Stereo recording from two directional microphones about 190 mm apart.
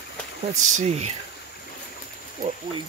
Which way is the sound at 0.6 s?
40° right (ahead or behind).